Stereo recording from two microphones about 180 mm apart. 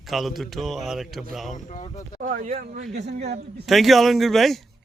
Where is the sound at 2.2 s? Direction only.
40° right (ahead or behind).